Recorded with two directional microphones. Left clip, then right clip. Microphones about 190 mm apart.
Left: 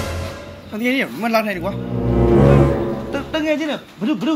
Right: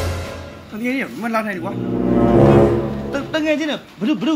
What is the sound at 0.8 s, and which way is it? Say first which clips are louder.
Speech: left 3 dB; 50° left (ahead or behind).